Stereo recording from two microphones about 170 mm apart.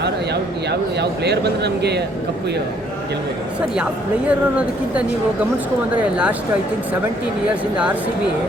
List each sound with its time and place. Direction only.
0.7 s speech: 80° right
4.3 s speech: 10° right (ahead or behind)